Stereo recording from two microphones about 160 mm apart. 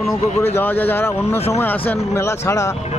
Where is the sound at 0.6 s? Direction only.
10° left (ahead or behind).